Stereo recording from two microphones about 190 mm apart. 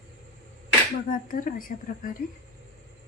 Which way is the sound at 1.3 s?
45° left (ahead or behind).